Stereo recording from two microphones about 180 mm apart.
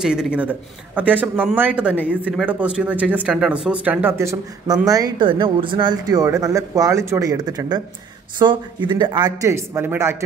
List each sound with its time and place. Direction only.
0.0 s speech: 5° right (ahead or behind)